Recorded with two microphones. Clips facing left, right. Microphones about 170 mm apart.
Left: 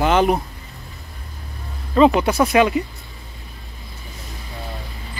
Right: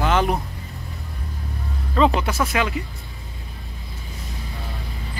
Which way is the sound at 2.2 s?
20° left (ahead or behind).